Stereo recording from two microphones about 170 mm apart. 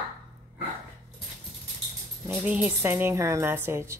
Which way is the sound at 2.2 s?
10° right (ahead or behind).